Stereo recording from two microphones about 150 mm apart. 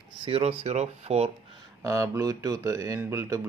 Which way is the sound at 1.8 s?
20° right (ahead or behind).